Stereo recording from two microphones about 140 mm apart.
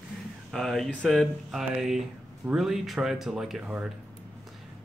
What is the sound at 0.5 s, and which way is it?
Speech, centre (ahead or behind).